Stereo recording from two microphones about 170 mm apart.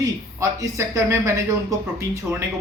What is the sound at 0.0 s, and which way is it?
Speech, 20° right (ahead or behind).